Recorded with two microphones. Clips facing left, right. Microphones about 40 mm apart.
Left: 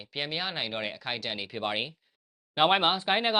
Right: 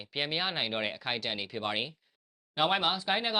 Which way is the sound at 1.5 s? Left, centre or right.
Centre.